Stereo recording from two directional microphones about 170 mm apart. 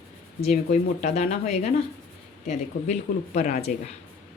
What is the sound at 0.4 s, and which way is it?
Speech, 40° left (ahead or behind).